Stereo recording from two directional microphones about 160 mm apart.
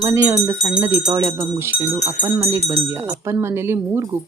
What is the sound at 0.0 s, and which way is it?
Speech, 15° right (ahead or behind).